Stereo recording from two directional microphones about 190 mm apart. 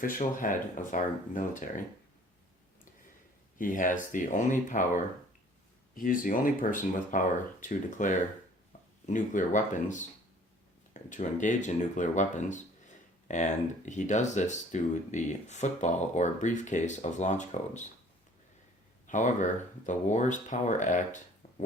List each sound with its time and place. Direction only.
0.0 s speech: 45° left (ahead or behind)
3.6 s speech: 45° left (ahead or behind)
6.0 s speech: 45° left (ahead or behind)
19.0 s speech: 40° left (ahead or behind)